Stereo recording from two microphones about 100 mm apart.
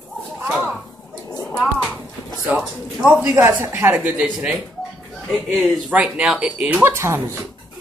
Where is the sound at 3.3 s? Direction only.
30° right (ahead or behind).